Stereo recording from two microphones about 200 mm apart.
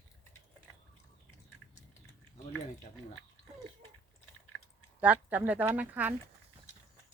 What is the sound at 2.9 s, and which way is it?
Speech, 30° left (ahead or behind).